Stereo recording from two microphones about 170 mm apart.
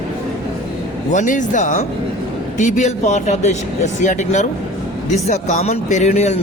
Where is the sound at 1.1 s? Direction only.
45° left (ahead or behind).